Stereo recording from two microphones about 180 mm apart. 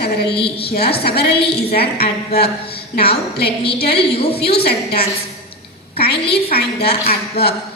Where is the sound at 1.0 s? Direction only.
65° left (ahead or behind).